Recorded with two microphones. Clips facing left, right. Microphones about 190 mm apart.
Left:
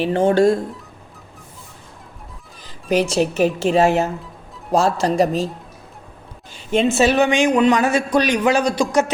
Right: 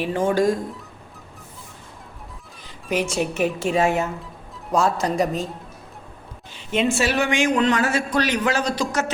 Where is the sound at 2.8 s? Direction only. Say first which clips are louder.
Left 5 dB; 35° left (ahead or behind).